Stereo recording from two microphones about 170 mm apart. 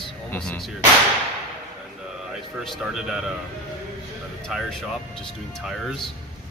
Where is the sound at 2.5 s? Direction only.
Centre (ahead or behind).